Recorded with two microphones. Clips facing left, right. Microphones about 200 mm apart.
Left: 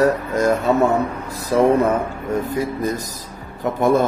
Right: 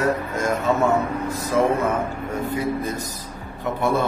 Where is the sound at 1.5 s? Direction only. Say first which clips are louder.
Left 5 dB; 35° left (ahead or behind).